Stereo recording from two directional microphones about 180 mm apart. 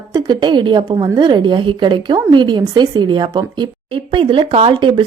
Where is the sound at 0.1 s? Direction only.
25° right (ahead or behind).